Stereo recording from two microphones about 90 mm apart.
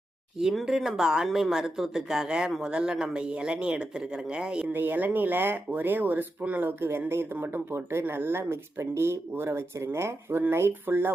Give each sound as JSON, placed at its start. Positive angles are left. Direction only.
{"t": 0.3, "sound": "speech", "side_deg": -5}